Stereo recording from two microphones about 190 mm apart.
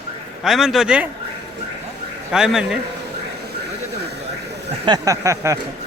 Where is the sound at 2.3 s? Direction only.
5° right (ahead or behind).